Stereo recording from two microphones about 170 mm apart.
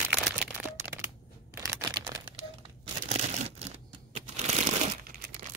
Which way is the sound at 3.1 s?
40° right (ahead or behind).